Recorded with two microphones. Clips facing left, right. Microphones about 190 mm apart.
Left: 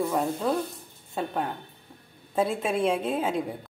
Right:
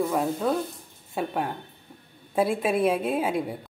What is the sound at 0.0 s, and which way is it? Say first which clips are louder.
A woman's voice: right 1 dB; 5° right (ahead or behind).